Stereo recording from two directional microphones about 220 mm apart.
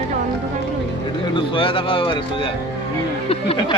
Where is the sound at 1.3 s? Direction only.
25° left (ahead or behind).